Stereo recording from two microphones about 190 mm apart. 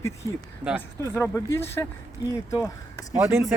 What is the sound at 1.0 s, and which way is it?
Speech, 15° left (ahead or behind).